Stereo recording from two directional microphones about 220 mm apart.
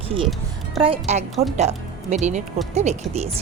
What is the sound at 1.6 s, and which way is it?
Speech, 30° right (ahead or behind).